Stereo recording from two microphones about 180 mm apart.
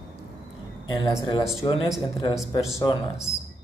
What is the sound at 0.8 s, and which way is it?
Speech, 25° left (ahead or behind).